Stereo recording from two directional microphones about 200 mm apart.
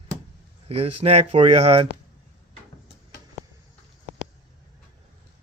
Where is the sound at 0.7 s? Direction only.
30° right (ahead or behind).